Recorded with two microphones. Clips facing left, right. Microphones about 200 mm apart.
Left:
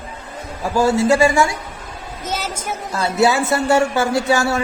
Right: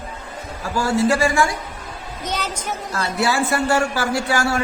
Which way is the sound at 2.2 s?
10° left (ahead or behind).